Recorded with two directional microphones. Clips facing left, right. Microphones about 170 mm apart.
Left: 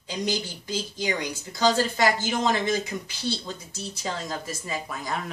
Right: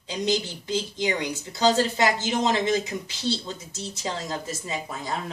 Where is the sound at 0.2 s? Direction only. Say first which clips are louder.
Right 3 dB; 20° right (ahead or behind).